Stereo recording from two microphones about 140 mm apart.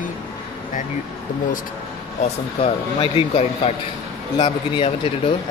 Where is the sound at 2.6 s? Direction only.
40° left (ahead or behind).